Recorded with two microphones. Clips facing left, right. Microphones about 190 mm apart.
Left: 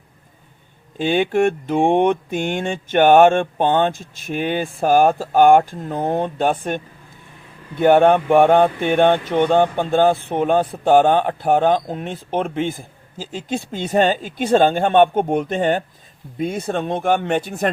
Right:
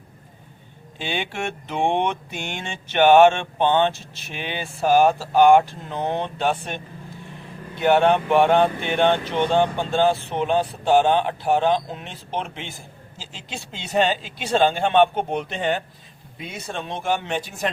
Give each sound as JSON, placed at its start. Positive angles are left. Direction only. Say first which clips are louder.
{"t": 0.9, "sound": "speech", "louder": "left 11 dB", "side_deg": 45}